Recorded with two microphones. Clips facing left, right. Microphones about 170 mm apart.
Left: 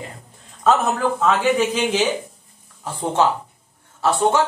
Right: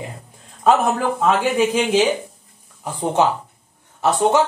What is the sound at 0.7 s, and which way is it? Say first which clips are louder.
Speech: right 1 dB; 10° right (ahead or behind).